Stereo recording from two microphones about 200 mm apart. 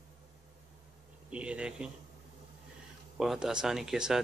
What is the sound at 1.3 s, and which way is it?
Speech, 5° right (ahead or behind).